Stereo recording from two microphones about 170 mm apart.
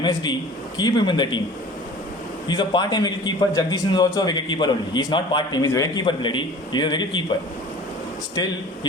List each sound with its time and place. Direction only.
0.0 s a man's voice: 25° left (ahead or behind)
2.5 s a man's voice: 25° left (ahead or behind)